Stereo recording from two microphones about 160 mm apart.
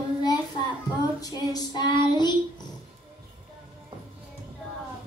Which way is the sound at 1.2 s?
25° left (ahead or behind).